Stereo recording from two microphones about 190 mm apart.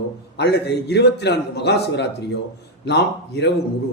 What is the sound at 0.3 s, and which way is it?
A man's voice, 60° left (ahead or behind).